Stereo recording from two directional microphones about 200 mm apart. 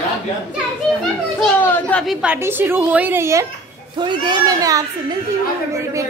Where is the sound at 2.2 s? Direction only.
10° right (ahead or behind).